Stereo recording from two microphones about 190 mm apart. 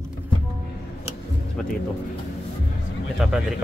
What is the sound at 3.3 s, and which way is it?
Speech, 5° right (ahead or behind).